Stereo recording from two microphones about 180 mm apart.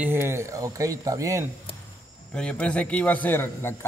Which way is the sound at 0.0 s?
15° right (ahead or behind).